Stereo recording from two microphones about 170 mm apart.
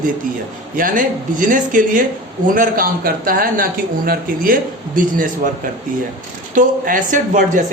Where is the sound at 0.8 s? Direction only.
55° right (ahead or behind).